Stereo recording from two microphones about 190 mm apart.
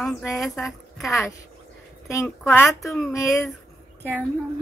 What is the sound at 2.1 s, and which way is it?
Speech, 15° left (ahead or behind).